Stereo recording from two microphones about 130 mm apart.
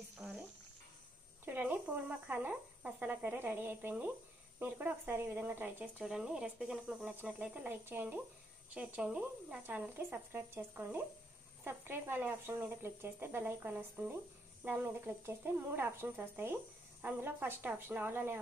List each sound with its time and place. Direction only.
1.4 s speech: 15° right (ahead or behind)